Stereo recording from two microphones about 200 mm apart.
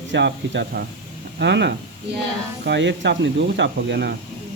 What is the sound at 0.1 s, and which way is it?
Speech, 60° right (ahead or behind).